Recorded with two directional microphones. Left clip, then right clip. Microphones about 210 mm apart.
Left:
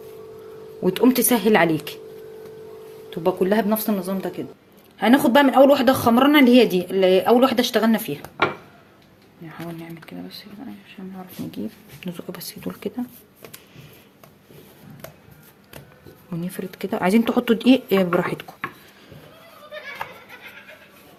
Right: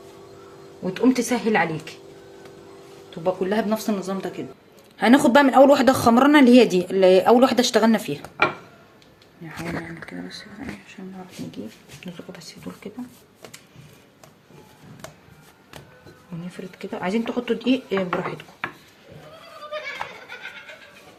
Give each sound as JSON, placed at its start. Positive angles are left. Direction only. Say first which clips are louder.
{"t": 0.9, "sound": "speech", "louder": "left 3 dB", "side_deg": 50}
{"t": 3.5, "sound": "speech", "louder": "left 2 dB", "side_deg": 20}
{"t": 4.9, "sound": "speech", "louder": "even", "side_deg": 0}
{"t": 10.1, "sound": "speech", "louder": "right 1 dB", "side_deg": 25}
{"t": 12.1, "sound": "speech", "louder": "left 4 dB", "side_deg": 55}
{"t": 16.5, "sound": "speech", "louder": "left 5 dB", "side_deg": 55}